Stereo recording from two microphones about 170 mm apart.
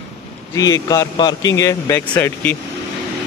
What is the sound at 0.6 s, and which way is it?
A man's voice, 20° left (ahead or behind).